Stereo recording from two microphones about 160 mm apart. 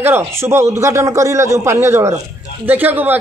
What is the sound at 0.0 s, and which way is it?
Speech, 15° right (ahead or behind).